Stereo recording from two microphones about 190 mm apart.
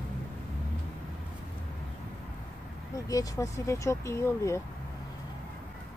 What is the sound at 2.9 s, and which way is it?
Speech, 20° left (ahead or behind).